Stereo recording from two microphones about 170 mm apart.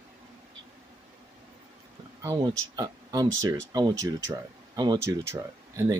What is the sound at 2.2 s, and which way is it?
Speech, 20° right (ahead or behind).